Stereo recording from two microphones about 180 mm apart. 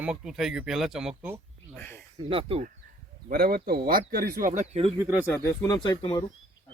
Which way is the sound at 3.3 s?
55° right (ahead or behind).